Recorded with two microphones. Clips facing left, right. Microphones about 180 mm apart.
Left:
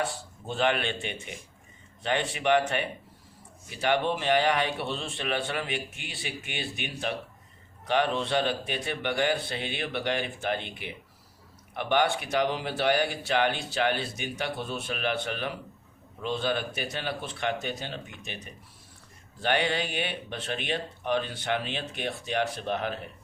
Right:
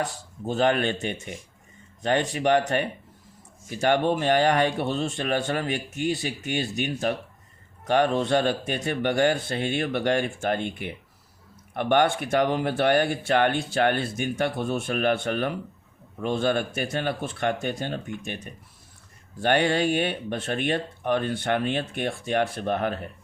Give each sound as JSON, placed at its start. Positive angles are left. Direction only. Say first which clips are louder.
{"t": 0.0, "sound": "speech", "louder": "right 2 dB", "side_deg": -40}